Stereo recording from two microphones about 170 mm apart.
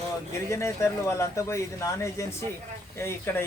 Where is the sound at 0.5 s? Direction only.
15° left (ahead or behind).